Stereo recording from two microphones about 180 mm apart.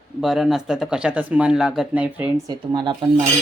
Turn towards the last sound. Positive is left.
turn(degrees=-25)  # may be behind; listen again after turning